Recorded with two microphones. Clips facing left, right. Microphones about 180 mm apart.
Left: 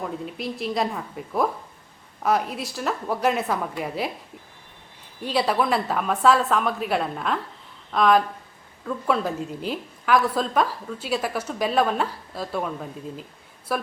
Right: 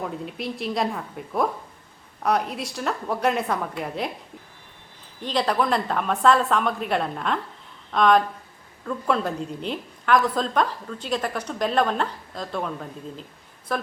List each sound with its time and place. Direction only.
0.0 s a woman's voice: centre (ahead or behind)
5.2 s a woman's voice: 5° left (ahead or behind)